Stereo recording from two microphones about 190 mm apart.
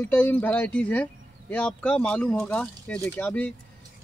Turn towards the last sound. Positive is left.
turn(degrees=10)  # may be behind; listen again after turning